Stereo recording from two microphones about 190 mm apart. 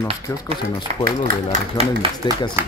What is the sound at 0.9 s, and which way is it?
Speech, 40° right (ahead or behind).